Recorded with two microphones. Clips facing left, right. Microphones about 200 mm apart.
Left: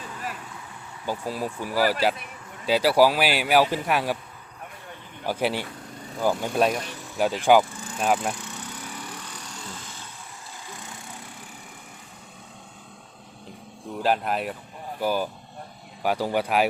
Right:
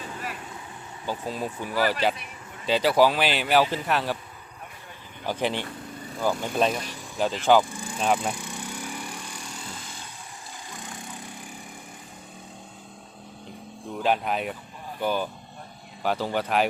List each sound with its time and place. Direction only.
1.0 s speech: 10° left (ahead or behind)
5.2 s speech: 10° left (ahead or behind)
7.6 s a sound: 15° right (ahead or behind)
7.9 s speech: 5° left (ahead or behind)
8.3 s lawn mower: 10° right (ahead or behind)
10.7 s wood: 15° right (ahead or behind)
14.0 s speech: centre (ahead or behind)